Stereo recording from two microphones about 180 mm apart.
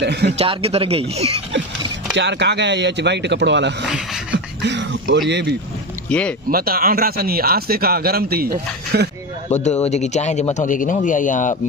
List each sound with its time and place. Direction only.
0.0 s speech: 70° right (ahead or behind)
0.3 s speech: 35° right (ahead or behind)
2.1 s speech: 75° right (ahead or behind)
6.0 s speech: 5° left (ahead or behind)
6.5 s a man's voice: 55° right (ahead or behind)
9.5 s speech: 40° left (ahead or behind)